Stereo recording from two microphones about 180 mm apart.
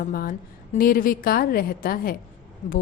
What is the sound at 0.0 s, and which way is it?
A woman's voice, 50° left (ahead or behind).